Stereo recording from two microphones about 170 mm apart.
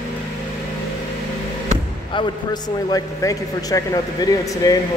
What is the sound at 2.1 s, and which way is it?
A man's voice, 25° left (ahead or behind).